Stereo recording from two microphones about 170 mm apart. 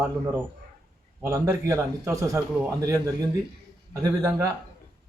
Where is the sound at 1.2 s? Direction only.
15° right (ahead or behind).